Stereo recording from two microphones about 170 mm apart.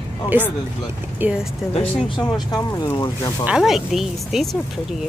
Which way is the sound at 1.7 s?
30° left (ahead or behind).